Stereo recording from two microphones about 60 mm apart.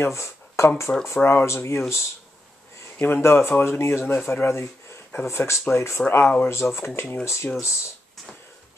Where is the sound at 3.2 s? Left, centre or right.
Left.